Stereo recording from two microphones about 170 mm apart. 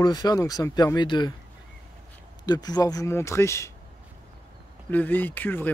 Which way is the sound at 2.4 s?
25° left (ahead or behind).